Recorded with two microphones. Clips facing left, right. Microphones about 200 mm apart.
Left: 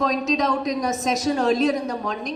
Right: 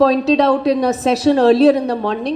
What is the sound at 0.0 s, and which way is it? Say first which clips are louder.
A woman's voice: right 9 dB; 30° right (ahead or behind).